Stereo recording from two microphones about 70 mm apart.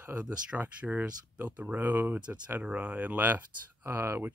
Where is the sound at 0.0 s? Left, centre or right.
Right.